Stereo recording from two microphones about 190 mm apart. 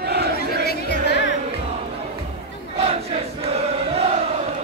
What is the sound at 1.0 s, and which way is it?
Music, 65° left (ahead or behind).